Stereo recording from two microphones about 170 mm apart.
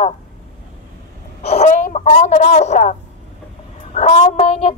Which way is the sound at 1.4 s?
40° left (ahead or behind).